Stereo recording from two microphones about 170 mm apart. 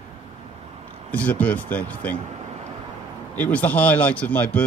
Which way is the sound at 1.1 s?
10° left (ahead or behind).